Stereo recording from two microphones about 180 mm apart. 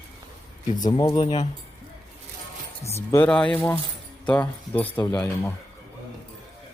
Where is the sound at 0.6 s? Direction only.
40° left (ahead or behind).